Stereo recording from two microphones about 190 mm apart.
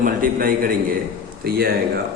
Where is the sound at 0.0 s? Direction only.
50° right (ahead or behind).